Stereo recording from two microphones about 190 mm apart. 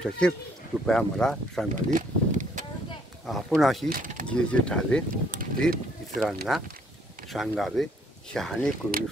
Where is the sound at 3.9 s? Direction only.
45° right (ahead or behind).